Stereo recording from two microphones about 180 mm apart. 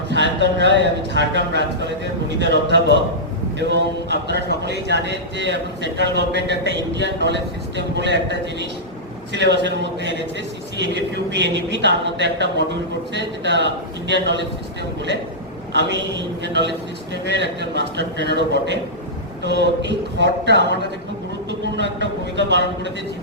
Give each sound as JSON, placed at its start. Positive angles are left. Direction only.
{"t": 0.1, "sound": "speech", "side_deg": -75}
{"t": 15.7, "sound": "speech", "side_deg": -75}